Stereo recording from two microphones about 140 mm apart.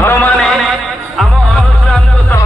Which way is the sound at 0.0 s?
15° left (ahead or behind).